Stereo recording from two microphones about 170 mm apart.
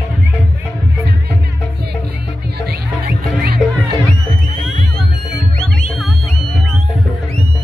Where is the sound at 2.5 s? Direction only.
65° right (ahead or behind).